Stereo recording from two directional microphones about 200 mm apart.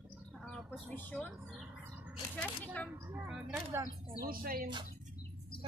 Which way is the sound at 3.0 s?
15° right (ahead or behind).